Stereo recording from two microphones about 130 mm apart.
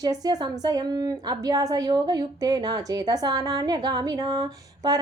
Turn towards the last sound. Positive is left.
turn(degrees=-30)  # may be behind; listen again after turning